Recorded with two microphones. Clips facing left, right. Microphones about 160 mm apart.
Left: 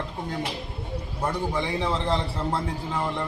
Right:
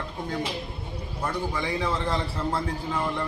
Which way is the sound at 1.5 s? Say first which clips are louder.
Left 1 dB; 20° left (ahead or behind).